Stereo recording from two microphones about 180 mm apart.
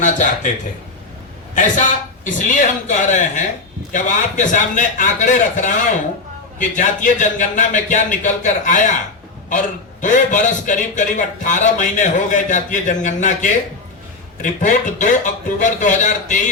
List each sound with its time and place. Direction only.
0.0 s a man's voice: 45° left (ahead or behind)
2.2 s a man's voice: 45° left (ahead or behind)